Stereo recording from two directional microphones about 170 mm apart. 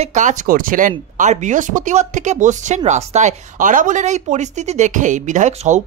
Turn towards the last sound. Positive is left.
turn(degrees=-45)  # may be behind; listen again after turning